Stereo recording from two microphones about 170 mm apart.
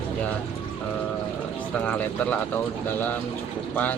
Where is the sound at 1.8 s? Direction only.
10° left (ahead or behind).